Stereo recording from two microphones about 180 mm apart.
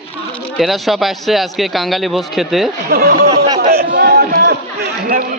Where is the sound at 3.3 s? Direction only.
35° right (ahead or behind).